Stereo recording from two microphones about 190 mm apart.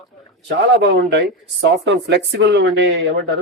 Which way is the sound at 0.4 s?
65° right (ahead or behind).